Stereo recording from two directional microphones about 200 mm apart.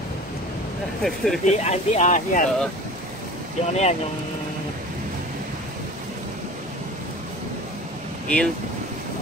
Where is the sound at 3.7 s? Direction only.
35° left (ahead or behind).